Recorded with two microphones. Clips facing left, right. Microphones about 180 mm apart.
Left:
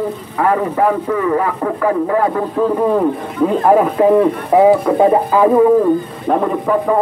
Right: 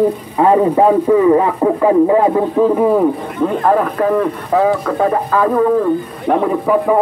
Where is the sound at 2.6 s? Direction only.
5° right (ahead or behind).